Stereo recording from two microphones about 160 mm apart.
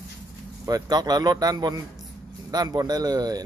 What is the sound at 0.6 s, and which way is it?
Speech, 25° right (ahead or behind).